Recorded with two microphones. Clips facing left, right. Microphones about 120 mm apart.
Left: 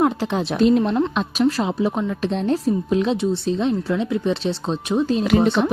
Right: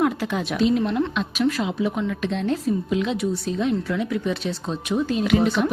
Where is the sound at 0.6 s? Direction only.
40° left (ahead or behind).